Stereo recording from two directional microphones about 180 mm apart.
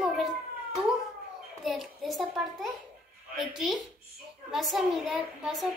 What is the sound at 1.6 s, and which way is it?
Speech, centre (ahead or behind).